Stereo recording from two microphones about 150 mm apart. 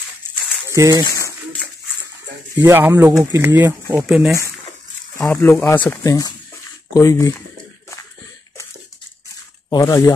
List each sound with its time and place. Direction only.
0.7 s speech: 20° right (ahead or behind)
2.5 s speech: 15° right (ahead or behind)
5.1 s speech: 20° left (ahead or behind)
9.7 s speech: 20° left (ahead or behind)